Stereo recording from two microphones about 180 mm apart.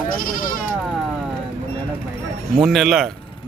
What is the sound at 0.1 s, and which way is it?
Speech, 50° left (ahead or behind).